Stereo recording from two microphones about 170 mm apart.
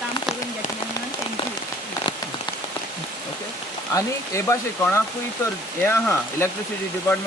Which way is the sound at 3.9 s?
15° left (ahead or behind).